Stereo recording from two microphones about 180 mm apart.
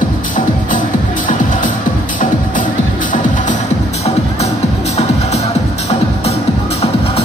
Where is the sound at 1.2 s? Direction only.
50° left (ahead or behind).